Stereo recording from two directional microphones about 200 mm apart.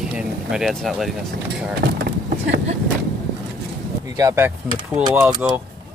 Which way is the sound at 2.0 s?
55° right (ahead or behind).